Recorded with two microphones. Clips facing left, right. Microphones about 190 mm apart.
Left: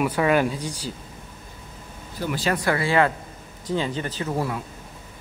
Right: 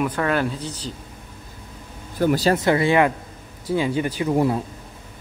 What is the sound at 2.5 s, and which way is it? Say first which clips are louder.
Speech: right 4 dB; 20° right (ahead or behind).